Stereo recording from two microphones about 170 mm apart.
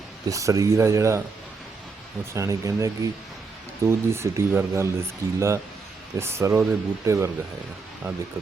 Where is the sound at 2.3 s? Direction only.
15° right (ahead or behind).